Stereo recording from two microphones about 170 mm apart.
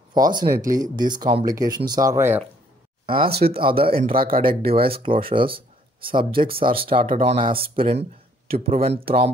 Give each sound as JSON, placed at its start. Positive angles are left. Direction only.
{"t": 0.1, "sound": "speech", "side_deg": -25}
{"t": 3.3, "sound": "speech", "side_deg": -70}
{"t": 3.5, "sound": "speech", "side_deg": -30}
{"t": 4.1, "sound": "speech", "side_deg": -60}
{"t": 4.4, "sound": "speech", "side_deg": -30}